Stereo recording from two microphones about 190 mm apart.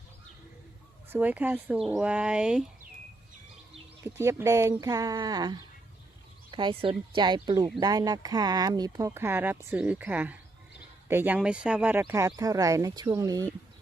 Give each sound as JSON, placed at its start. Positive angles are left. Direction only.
{"t": 1.1, "sound": "speech", "side_deg": -10}
{"t": 4.0, "sound": "speech", "side_deg": -15}